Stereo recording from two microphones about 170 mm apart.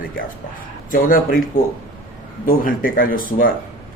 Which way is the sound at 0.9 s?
55° left (ahead or behind).